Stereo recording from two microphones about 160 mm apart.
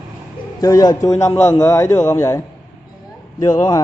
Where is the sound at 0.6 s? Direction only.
20° left (ahead or behind).